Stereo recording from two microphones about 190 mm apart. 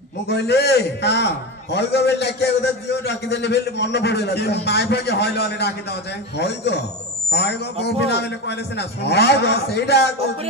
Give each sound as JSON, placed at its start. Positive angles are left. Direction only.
{"t": 0.3, "sound": "a man's voice", "side_deg": 60}
{"t": 7.8, "sound": "a man's voice", "side_deg": 60}